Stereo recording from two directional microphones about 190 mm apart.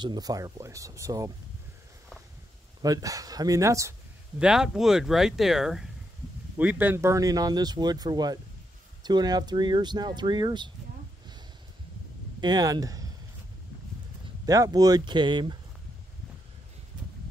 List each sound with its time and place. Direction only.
0.0 s speech: 20° right (ahead or behind)
2.8 s speech: 20° right (ahead or behind)
4.4 s speech: 5° right (ahead or behind); by 10.7 s 25° right (ahead or behind)
12.4 s speech: 20° right (ahead or behind)
14.4 s speech: 20° right (ahead or behind)